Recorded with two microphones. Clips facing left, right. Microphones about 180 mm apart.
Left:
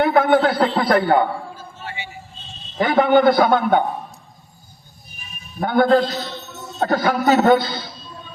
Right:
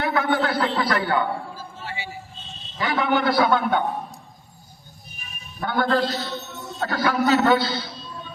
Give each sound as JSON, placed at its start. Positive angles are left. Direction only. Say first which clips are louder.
{"t": 0.0, "sound": "a man's voice", "louder": "left 7 dB", "side_deg": 55}
{"t": 1.5, "sound": "a sound", "louder": "left 1 dB", "side_deg": -30}
{"t": 2.7, "sound": "a man's voice", "louder": "left 8 dB", "side_deg": 50}
{"t": 5.5, "sound": "a man's voice", "louder": "left 7 dB", "side_deg": 50}